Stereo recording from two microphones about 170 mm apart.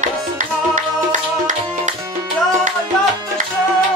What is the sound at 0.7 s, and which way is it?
Music, 50° right (ahead or behind).